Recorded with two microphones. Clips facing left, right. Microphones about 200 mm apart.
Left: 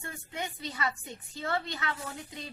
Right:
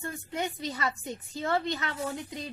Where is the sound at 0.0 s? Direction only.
40° right (ahead or behind).